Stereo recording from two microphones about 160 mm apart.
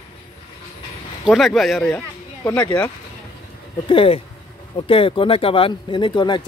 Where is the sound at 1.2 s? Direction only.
Centre (ahead or behind).